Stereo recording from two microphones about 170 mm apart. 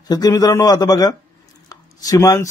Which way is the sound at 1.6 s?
20° left (ahead or behind).